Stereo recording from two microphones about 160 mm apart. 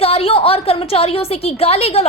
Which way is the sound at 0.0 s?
40° left (ahead or behind).